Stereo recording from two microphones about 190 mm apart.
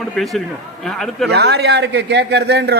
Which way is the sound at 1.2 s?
60° right (ahead or behind).